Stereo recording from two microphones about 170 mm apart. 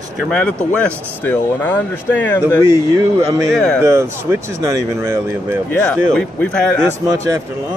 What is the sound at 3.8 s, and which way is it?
Speech, 15° right (ahead or behind).